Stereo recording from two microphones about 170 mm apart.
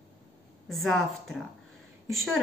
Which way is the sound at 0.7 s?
Centre (ahead or behind).